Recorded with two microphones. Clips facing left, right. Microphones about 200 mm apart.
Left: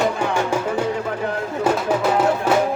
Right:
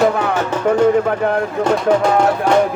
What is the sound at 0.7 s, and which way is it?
Music, 65° right (ahead or behind).